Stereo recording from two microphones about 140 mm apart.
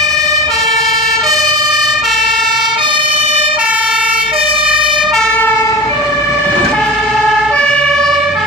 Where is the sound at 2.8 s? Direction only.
35° right (ahead or behind).